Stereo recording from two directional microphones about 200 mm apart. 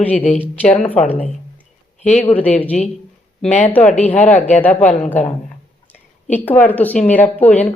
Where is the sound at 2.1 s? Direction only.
35° left (ahead or behind).